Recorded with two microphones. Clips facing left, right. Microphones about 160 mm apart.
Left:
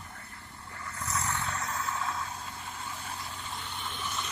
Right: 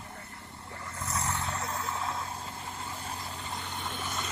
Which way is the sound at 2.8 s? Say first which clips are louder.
Even; 40° right (ahead or behind).